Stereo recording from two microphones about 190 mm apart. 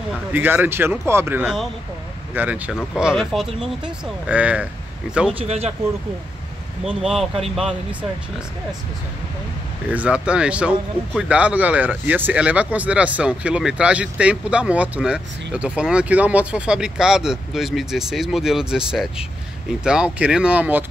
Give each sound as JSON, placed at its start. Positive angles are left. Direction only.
{"t": 0.3, "sound": "a man's voice", "side_deg": -10}
{"t": 5.3, "sound": "speech", "side_deg": -30}
{"t": 6.8, "sound": "speech", "side_deg": 0}
{"t": 9.8, "sound": "speech", "side_deg": -5}